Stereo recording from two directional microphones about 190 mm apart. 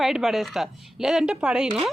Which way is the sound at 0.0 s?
Centre (ahead or behind).